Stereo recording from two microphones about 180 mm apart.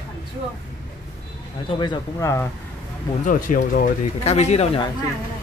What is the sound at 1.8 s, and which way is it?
Speech, 20° left (ahead or behind).